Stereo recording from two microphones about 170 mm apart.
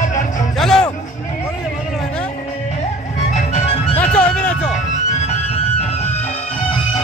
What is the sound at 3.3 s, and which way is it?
Music, 40° left (ahead or behind).